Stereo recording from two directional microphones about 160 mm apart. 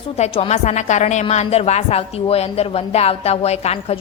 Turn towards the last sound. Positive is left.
turn(degrees=40)  # may be behind; listen again after turning